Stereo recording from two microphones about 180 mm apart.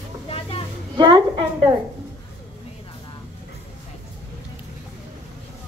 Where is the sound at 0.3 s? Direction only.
30° left (ahead or behind).